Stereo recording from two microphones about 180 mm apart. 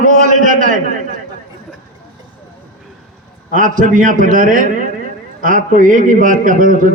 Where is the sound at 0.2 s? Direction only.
45° right (ahead or behind).